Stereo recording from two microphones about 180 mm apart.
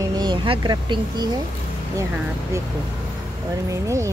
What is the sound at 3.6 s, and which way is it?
Speech, 15° right (ahead or behind).